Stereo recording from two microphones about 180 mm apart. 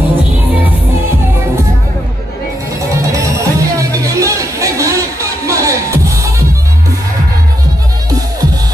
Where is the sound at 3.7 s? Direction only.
20° right (ahead or behind).